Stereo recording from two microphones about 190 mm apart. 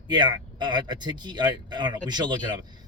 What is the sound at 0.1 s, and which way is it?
Speech, 25° right (ahead or behind).